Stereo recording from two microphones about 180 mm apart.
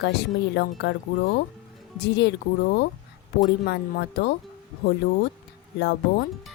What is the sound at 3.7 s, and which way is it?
Speech, 65° left (ahead or behind).